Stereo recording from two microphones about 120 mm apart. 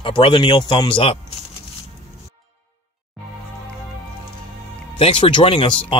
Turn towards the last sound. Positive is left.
turn(degrees=45)  # may be behind; listen again after turning